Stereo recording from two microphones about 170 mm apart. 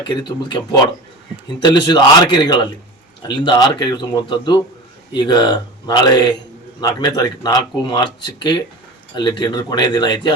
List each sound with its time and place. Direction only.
0.0 s speech: 25° left (ahead or behind)